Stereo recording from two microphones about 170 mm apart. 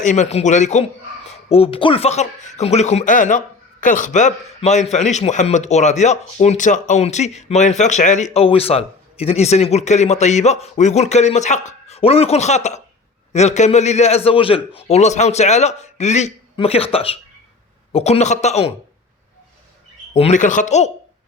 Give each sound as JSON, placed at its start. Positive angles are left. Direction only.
{"t": 0.0, "sound": "a man's voice", "side_deg": 45}
{"t": 20.1, "sound": "speech", "side_deg": 40}